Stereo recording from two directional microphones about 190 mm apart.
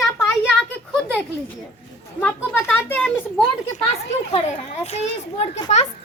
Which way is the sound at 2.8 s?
10° left (ahead or behind).